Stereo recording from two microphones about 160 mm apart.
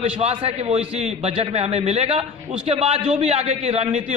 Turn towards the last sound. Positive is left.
turn(degrees=-40)  # may be behind; listen again after turning